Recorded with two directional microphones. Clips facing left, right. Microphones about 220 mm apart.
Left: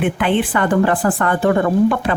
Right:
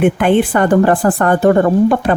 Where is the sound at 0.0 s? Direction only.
45° right (ahead or behind).